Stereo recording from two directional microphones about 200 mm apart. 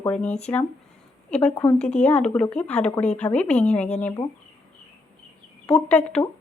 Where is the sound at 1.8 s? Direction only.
35° left (ahead or behind).